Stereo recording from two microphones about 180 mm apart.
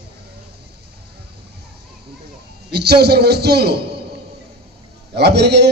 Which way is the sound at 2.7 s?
65° right (ahead or behind).